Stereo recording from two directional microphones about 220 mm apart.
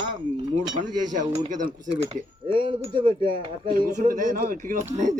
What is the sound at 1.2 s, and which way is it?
Speech, 20° right (ahead or behind).